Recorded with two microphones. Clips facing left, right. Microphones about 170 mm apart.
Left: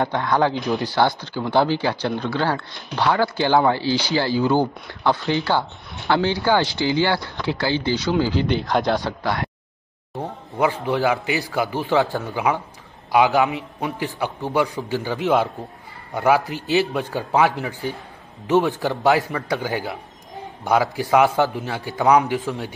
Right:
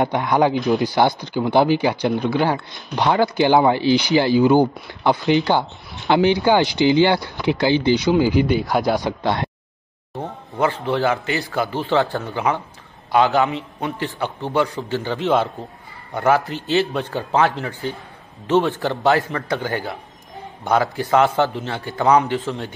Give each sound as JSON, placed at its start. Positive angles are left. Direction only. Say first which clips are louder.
{"t": 0.0, "sound": "speech", "louder": "right 2 dB", "side_deg": -15}
{"t": 10.2, "sound": "a man's voice", "louder": "even", "side_deg": 15}